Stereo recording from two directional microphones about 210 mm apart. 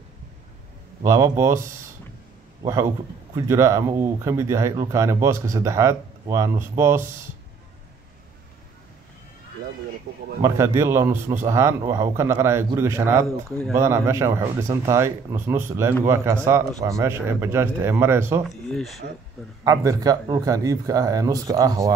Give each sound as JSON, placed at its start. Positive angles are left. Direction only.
{"t": 1.0, "sound": "speech", "side_deg": -15}
{"t": 3.3, "sound": "speech", "side_deg": -15}
{"t": 10.4, "sound": "speech", "side_deg": -15}
{"t": 18.5, "sound": "speech", "side_deg": 0}
{"t": 19.6, "sound": "speech", "side_deg": -15}